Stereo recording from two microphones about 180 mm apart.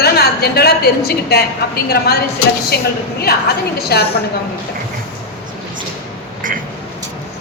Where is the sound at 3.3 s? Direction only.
60° left (ahead or behind).